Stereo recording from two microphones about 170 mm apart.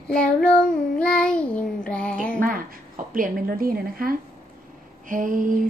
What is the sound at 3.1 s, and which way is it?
A woman's voice, 55° right (ahead or behind).